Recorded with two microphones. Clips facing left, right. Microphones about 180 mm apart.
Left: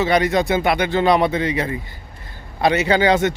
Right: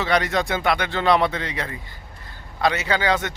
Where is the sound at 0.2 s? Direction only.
15° left (ahead or behind).